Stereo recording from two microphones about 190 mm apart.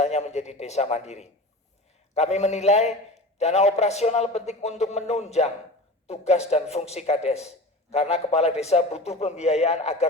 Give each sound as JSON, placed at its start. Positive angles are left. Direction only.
{"t": 0.0, "sound": "a man's voice", "side_deg": 35}